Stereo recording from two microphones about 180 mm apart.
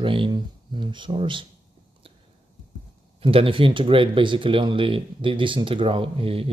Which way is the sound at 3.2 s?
30° right (ahead or behind).